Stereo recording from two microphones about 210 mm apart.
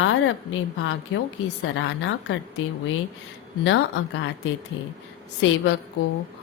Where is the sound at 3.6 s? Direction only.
65° left (ahead or behind).